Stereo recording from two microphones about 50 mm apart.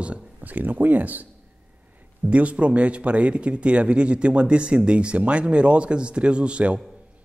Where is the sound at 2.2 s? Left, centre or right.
Right.